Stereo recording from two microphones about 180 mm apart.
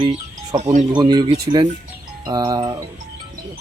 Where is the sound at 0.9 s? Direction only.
25° right (ahead or behind).